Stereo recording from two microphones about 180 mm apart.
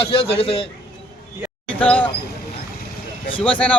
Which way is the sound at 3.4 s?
5° left (ahead or behind).